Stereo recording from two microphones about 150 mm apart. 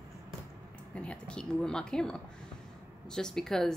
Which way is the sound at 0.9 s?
10° left (ahead or behind).